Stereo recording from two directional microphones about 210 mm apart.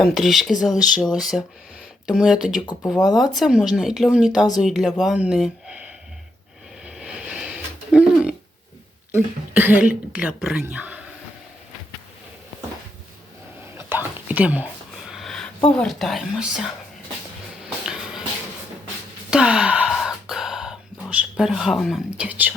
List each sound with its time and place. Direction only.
0.0 s rub: centre (ahead or behind)
2.6 s speech: 15° left (ahead or behind)
3.2 s rub: centre (ahead or behind)
6.8 s a sound: 5° right (ahead or behind)
9.1 s speech: 10° right (ahead or behind)
13.7 s whispering: 10° right (ahead or behind)
15.7 s rub: centre (ahead or behind)
19.3 s gasp: 5° right (ahead or behind)